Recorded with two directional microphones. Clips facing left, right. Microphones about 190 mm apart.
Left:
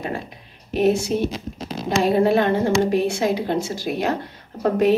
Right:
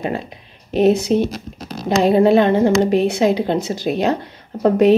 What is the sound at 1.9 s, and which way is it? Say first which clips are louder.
A woman's voice: right 5 dB; 20° right (ahead or behind).